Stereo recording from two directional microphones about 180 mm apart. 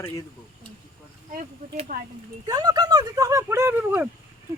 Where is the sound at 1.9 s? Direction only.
50° right (ahead or behind).